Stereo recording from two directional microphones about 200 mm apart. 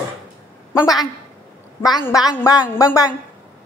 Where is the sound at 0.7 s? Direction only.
15° left (ahead or behind).